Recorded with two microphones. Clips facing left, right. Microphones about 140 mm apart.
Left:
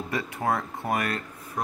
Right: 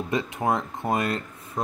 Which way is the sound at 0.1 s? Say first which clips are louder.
Right 2 dB; 20° right (ahead or behind).